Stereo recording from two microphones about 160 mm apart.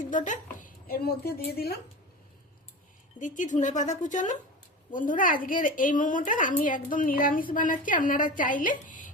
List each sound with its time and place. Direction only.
0.0 s a woman's voice: 55° left (ahead or behind)
0.6 s speech: 65° left (ahead or behind)
3.2 s a woman's voice: 50° left (ahead or behind)